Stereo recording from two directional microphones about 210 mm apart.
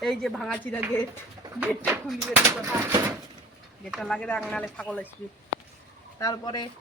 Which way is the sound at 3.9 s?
Centre (ahead or behind).